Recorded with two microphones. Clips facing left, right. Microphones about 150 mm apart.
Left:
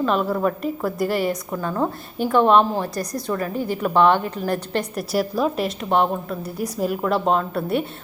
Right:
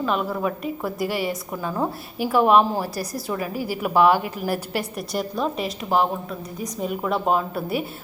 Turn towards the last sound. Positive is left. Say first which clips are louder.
# left 2 dB
turn(degrees=-5)  # may be behind; listen again after turning